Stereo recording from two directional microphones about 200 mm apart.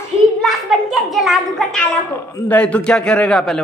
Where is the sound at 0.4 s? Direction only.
Centre (ahead or behind).